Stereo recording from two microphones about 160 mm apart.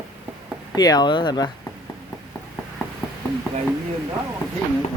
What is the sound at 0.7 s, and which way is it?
Speech, 25° left (ahead or behind).